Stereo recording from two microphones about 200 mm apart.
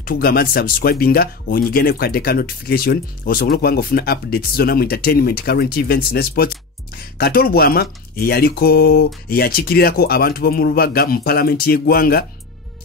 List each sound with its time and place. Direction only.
0.0 s speech: 50° left (ahead or behind)